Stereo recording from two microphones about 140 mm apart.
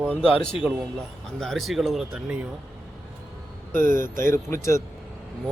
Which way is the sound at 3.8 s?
75° right (ahead or behind).